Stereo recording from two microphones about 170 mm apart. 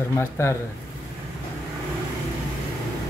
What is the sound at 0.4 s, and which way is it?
Speech, 15° left (ahead or behind).